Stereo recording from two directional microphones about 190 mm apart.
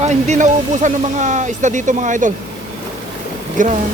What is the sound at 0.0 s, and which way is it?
Speech, 35° right (ahead or behind).